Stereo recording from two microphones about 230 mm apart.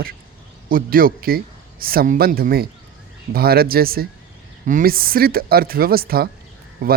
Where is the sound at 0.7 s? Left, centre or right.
Right.